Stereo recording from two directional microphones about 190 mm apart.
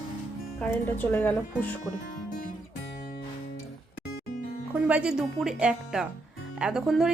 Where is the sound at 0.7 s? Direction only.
10° left (ahead or behind).